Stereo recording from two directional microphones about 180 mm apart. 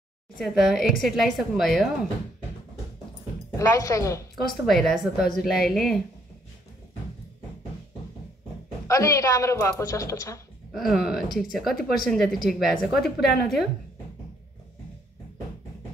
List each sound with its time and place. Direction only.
0.4 s speech: centre (ahead or behind)
3.5 s a woman's voice: 15° left (ahead or behind)
4.6 s speech: centre (ahead or behind)
8.8 s a woman's voice: 15° left (ahead or behind)
10.7 s speech: centre (ahead or behind)